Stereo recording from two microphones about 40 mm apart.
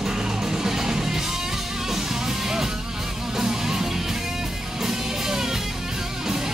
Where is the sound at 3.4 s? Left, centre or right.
Centre.